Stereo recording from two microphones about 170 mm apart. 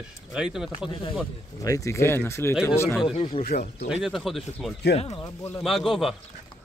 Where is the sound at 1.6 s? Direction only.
20° left (ahead or behind).